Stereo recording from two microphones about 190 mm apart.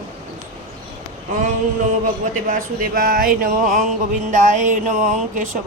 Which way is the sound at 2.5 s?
50° right (ahead or behind).